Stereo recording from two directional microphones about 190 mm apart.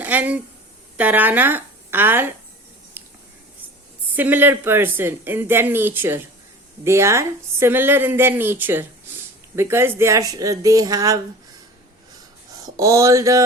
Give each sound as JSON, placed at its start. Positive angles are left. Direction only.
{"t": 0.0, "sound": "speech", "side_deg": -10}
{"t": 3.0, "sound": "whispering", "side_deg": -10}
{"t": 4.1, "sound": "speech", "side_deg": -10}
{"t": 12.6, "sound": "a sound", "side_deg": -15}